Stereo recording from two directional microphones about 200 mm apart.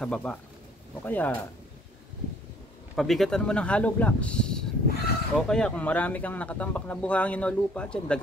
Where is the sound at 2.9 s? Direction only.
Centre (ahead or behind).